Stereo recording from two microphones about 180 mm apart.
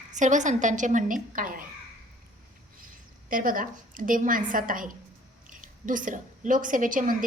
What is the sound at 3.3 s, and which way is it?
A woman's voice, 50° right (ahead or behind).